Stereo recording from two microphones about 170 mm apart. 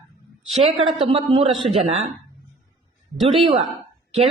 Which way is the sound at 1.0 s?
30° right (ahead or behind).